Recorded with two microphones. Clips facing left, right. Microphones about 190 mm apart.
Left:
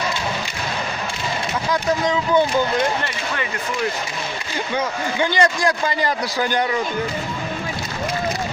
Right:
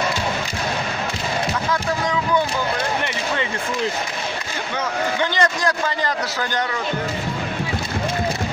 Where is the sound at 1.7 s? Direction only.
20° left (ahead or behind).